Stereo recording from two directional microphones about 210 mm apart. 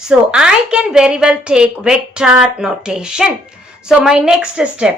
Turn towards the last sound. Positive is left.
turn(degrees=-5)  # may be behind; listen again after turning